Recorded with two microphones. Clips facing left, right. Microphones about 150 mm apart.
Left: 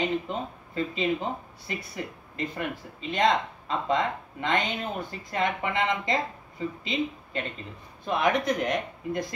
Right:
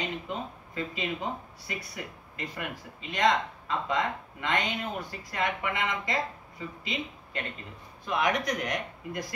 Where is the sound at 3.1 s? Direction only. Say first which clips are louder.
Left 2 dB; 25° left (ahead or behind).